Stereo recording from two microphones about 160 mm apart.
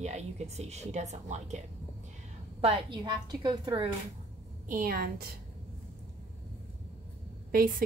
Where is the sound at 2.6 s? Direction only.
30° right (ahead or behind).